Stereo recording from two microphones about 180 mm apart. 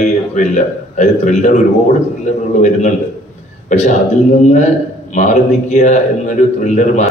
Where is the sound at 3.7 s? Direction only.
40° left (ahead or behind).